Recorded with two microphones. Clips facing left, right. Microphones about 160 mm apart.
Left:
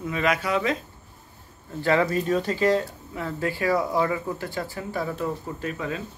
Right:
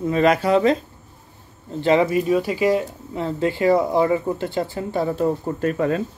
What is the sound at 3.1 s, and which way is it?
Speech, 25° right (ahead or behind).